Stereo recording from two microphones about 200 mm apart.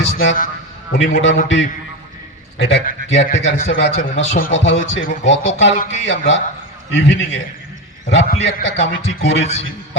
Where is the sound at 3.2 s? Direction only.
35° left (ahead or behind).